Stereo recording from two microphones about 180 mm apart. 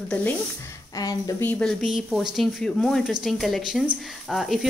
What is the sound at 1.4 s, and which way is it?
Speech, centre (ahead or behind).